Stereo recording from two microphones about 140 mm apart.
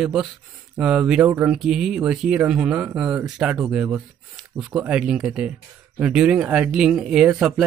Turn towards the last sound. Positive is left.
turn(degrees=-5)  # may be behind; listen again after turning